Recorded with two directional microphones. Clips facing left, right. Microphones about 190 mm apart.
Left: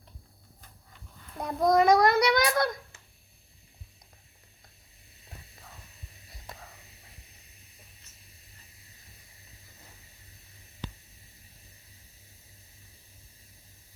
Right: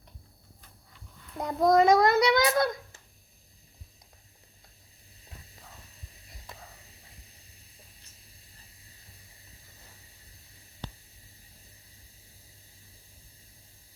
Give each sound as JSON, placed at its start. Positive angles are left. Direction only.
{"t": 1.4, "sound": "a child's voice", "side_deg": -25}